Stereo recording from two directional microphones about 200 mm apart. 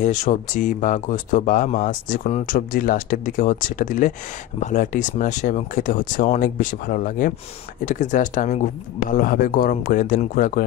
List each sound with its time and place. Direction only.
0.0 s speech: 40° left (ahead or behind)